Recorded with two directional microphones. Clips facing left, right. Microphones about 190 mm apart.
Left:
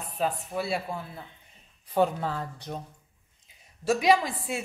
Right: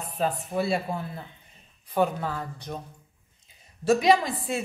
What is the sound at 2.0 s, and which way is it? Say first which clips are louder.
Speech: even; 25° left (ahead or behind).